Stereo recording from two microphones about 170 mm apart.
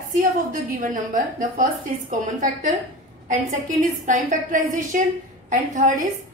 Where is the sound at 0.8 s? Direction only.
50° right (ahead or behind).